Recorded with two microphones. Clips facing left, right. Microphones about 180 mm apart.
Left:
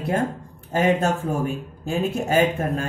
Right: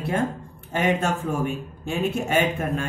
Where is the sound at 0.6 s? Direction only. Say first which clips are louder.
Left 3 dB; 35° left (ahead or behind).